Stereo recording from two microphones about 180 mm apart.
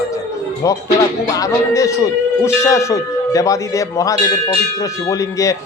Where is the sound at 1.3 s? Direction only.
20° left (ahead or behind).